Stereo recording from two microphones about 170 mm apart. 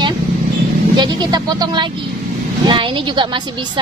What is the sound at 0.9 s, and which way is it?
A woman's voice, 25° right (ahead or behind).